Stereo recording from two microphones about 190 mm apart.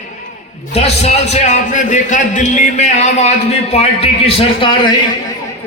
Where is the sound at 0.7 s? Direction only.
35° left (ahead or behind).